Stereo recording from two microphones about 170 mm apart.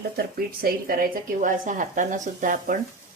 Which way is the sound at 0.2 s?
60° right (ahead or behind).